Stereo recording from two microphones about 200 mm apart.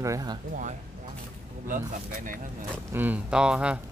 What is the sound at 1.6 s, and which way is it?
Speech, 40° right (ahead or behind).